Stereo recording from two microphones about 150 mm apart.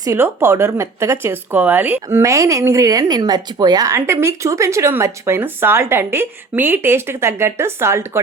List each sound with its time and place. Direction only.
0.0 s speech: 20° right (ahead or behind)